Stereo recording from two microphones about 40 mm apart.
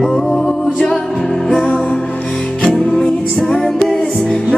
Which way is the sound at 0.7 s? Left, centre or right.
Centre.